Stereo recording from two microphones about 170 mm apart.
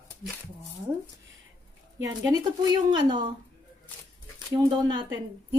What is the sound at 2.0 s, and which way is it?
A woman's voice, 25° right (ahead or behind).